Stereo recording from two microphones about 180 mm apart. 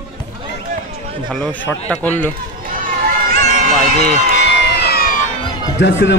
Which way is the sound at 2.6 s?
50° right (ahead or behind).